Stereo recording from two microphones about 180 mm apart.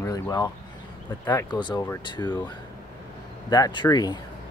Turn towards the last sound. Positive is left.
turn(degrees=20)  # may be behind; listen again after turning